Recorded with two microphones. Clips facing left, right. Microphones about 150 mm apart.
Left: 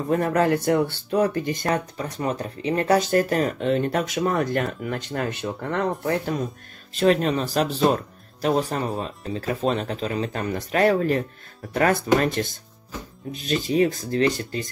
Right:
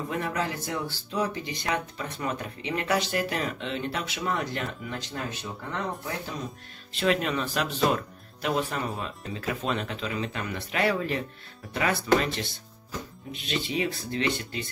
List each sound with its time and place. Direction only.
0.1 s speech: 50° left (ahead or behind); by 6.3 s 65° left (ahead or behind)
6.9 s speech: 40° left (ahead or behind)